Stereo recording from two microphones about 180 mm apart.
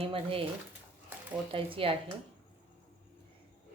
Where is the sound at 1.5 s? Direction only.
30° right (ahead or behind).